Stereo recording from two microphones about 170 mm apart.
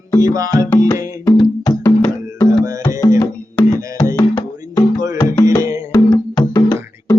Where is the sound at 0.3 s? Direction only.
20° right (ahead or behind).